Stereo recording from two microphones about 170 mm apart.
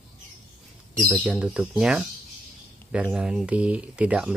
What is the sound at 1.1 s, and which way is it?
Speech, 5° right (ahead or behind).